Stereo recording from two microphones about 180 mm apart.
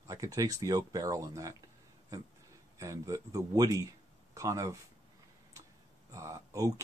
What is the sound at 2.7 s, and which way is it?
Speech, 20° right (ahead or behind).